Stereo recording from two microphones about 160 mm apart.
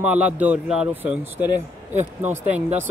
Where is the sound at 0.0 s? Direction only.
10° right (ahead or behind).